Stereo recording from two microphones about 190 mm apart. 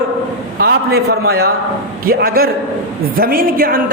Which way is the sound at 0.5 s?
55° right (ahead or behind).